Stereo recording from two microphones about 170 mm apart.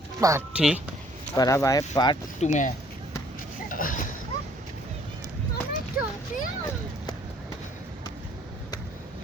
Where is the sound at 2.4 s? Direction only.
45° left (ahead or behind).